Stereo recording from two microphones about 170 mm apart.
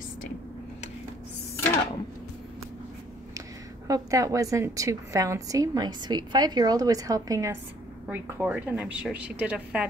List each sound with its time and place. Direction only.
3.3 s a woman's voice: 20° right (ahead or behind)